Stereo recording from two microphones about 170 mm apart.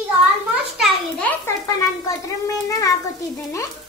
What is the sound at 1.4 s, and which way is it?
A child's voice, 20° left (ahead or behind).